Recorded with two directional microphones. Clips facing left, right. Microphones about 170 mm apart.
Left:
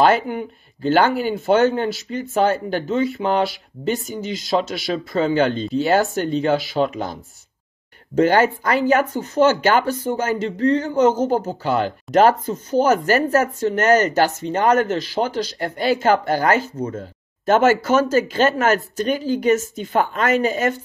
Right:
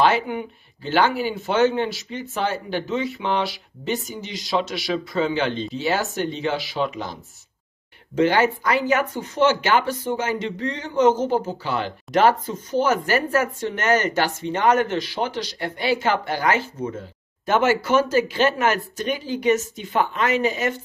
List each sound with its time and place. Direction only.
0.0 s speech: 45° left (ahead or behind)
8.2 s speech: 45° left (ahead or behind)